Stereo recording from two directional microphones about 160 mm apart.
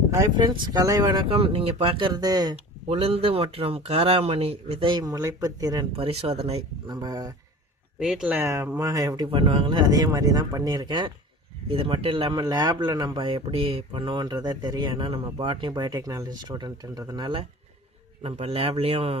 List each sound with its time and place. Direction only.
0.1 s a man's voice: 25° right (ahead or behind)
1.3 s speech: 35° right (ahead or behind)
2.9 s speech: 40° right (ahead or behind)
6.1 s speech: 40° right (ahead or behind)
6.8 s a man's voice: 25° right (ahead or behind)
7.9 s a man's voice: 5° right (ahead or behind); by 17.4 s 25° right (ahead or behind)
18.2 s speech: 40° right (ahead or behind)